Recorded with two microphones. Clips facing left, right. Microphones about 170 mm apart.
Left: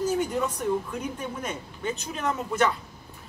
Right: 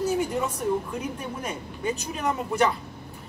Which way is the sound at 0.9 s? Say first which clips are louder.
Right 1 dB; 10° right (ahead or behind).